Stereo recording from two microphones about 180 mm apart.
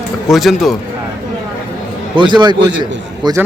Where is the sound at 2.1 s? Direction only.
25° right (ahead or behind).